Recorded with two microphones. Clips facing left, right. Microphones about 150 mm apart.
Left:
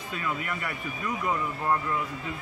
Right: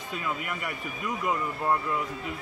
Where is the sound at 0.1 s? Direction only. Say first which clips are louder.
Left 1 dB; 15° right (ahead or behind).